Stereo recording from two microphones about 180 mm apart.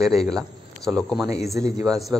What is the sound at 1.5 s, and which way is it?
Speech, 20° right (ahead or behind).